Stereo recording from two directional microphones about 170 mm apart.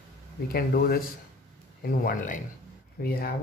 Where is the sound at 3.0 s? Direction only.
65° left (ahead or behind).